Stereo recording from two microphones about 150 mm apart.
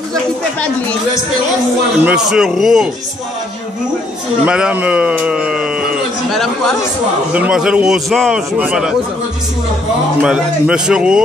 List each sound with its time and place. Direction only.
0.1 s speech: 10° left (ahead or behind)
2.0 s a man's voice: 5° right (ahead or behind)
4.5 s speech: 5° right (ahead or behind)
7.3 s a man's voice: 5° right (ahead or behind)
10.2 s a man's voice: 5° right (ahead or behind)